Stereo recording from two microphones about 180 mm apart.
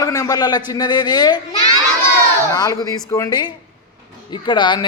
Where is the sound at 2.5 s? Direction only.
20° left (ahead or behind).